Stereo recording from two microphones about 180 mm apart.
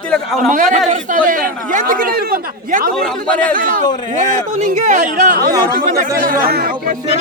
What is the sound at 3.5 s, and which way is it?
A man's voice, 50° right (ahead or behind).